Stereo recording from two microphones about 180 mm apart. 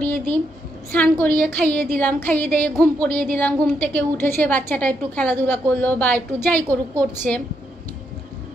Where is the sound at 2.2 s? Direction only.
10° left (ahead or behind).